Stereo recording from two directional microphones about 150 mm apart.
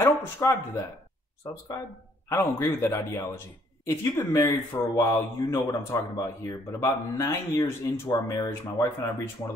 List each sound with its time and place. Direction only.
0.0 s speech: 20° left (ahead or behind)